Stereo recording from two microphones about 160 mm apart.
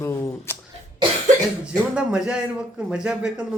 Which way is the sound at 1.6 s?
5° right (ahead or behind).